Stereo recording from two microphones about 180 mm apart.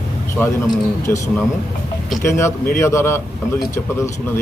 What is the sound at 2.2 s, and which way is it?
Speech, 15° left (ahead or behind).